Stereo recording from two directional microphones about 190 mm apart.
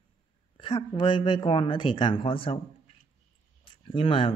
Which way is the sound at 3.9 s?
25° left (ahead or behind).